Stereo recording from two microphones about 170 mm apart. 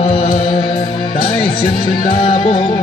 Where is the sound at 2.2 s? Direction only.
35° left (ahead or behind).